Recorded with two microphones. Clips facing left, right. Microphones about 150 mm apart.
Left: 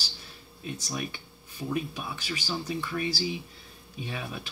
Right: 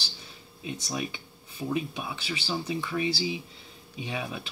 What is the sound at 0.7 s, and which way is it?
Speech, 15° right (ahead or behind).